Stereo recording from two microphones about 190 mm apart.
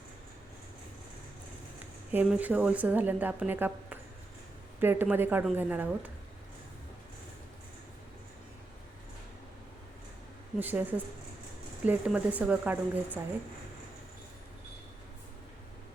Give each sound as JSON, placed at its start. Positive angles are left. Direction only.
{"t": 2.1, "sound": "speech", "side_deg": -10}
{"t": 10.6, "sound": "speech", "side_deg": -10}